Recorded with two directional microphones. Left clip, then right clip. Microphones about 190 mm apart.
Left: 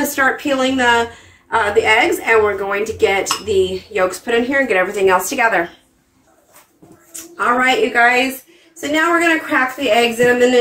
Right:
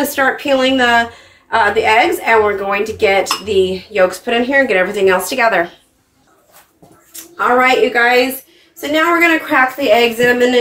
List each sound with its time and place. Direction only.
0.1 s speech: 15° right (ahead or behind)
7.3 s speech: 5° right (ahead or behind)